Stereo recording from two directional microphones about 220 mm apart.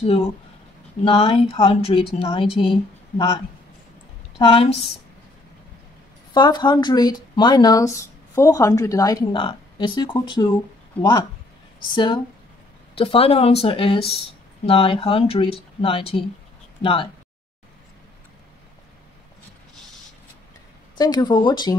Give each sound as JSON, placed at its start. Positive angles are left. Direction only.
{"t": 0.0, "sound": "speech", "side_deg": 30}
{"t": 4.4, "sound": "speech", "side_deg": 25}
{"t": 6.3, "sound": "speech", "side_deg": 20}
{"t": 21.0, "sound": "speech", "side_deg": 20}